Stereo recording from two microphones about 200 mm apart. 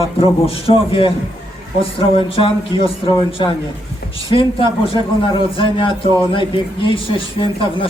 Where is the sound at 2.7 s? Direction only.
20° left (ahead or behind).